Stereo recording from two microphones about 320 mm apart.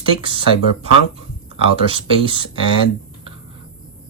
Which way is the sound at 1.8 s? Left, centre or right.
Centre.